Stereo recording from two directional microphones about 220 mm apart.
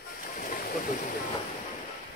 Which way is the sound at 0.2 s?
35° left (ahead or behind).